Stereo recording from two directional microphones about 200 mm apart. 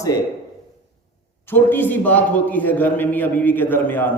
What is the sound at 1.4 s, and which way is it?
A man's voice, 10° left (ahead or behind).